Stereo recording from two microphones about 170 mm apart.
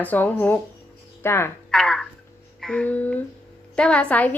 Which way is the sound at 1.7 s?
5° left (ahead or behind).